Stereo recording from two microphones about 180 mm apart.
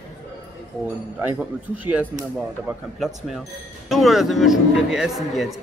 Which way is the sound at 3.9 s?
Centre (ahead or behind).